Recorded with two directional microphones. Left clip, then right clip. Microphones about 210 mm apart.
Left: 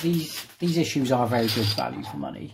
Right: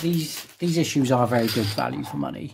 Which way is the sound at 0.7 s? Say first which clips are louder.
Right 2 dB; 25° right (ahead or behind).